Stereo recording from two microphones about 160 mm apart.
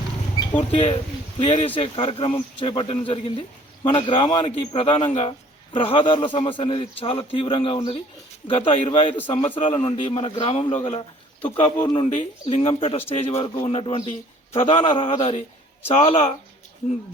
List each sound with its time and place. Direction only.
0.7 s a man's voice: 35° left (ahead or behind)
10.8 s a man's voice: 45° left (ahead or behind)